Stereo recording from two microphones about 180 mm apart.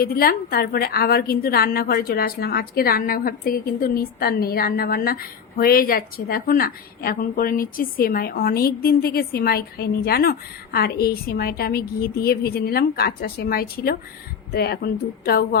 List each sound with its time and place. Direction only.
0.0 s a woman's voice: 55° left (ahead or behind)